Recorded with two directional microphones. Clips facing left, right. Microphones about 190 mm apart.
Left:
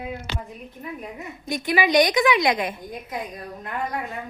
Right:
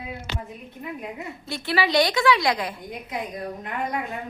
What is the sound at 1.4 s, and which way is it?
A woman's voice, 15° left (ahead or behind).